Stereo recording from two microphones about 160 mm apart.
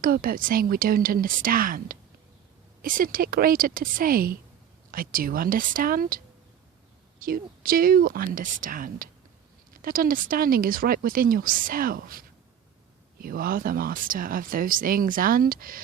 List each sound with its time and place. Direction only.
0.0 s speech: 65° right (ahead or behind)